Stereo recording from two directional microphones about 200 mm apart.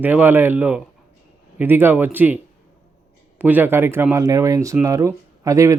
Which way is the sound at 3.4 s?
10° right (ahead or behind).